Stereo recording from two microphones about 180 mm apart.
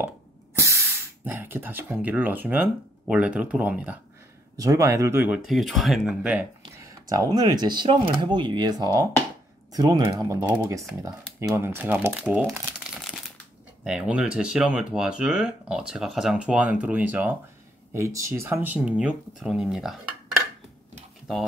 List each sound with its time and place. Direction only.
0.6 s speech: 15° right (ahead or behind)
6.6 s a sound: 20° right (ahead or behind)
7.3 s speech: 25° right (ahead or behind); by 20.0 s 5° right (ahead or behind)